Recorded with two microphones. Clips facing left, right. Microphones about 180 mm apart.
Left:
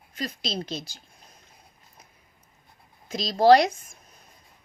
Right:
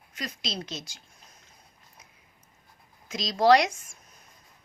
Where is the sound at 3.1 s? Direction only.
35° left (ahead or behind).